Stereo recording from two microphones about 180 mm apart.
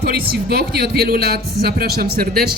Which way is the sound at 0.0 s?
60° right (ahead or behind).